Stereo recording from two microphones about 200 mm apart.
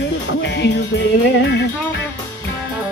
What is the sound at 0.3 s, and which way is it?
Music, 60° left (ahead or behind).